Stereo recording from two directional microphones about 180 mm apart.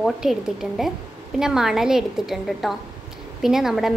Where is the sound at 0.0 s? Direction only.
Centre (ahead or behind).